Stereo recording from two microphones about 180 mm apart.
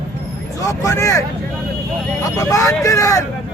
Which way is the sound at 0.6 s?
20° left (ahead or behind).